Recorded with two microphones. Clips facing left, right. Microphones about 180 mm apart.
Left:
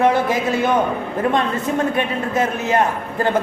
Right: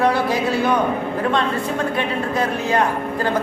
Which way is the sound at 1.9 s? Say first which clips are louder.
Left 1 dB; 20° left (ahead or behind).